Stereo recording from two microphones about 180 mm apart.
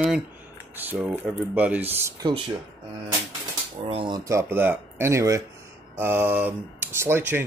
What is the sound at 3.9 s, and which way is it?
Speech, 30° right (ahead or behind).